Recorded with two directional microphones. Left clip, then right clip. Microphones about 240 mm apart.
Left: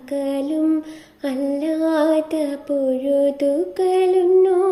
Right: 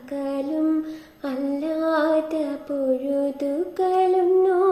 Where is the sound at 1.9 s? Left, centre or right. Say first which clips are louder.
Left 2 dB; left.